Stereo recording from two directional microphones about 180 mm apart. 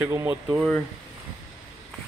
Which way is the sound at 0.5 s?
5° left (ahead or behind).